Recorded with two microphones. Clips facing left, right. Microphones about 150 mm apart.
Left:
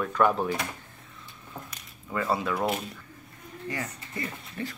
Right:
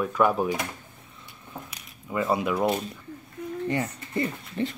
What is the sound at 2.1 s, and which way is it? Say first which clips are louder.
Speech: right 3 dB; 15° right (ahead or behind).